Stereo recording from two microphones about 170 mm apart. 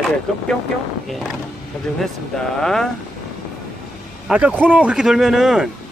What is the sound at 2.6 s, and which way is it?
Speech, 5° left (ahead or behind).